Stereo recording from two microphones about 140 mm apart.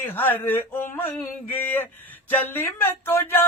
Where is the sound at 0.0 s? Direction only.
15° left (ahead or behind).